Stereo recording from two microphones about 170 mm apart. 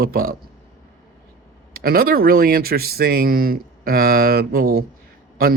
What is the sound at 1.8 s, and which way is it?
Speech, 60° right (ahead or behind).